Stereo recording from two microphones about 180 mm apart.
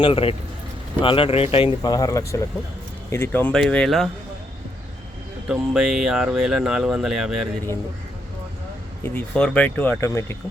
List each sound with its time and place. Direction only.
0.0 s speech: 30° left (ahead or behind); by 4.1 s centre (ahead or behind)
5.5 s speech: 5° right (ahead or behind)
9.0 s speech: 5° left (ahead or behind)